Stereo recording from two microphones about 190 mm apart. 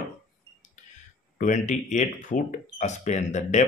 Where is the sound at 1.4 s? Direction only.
40° left (ahead or behind).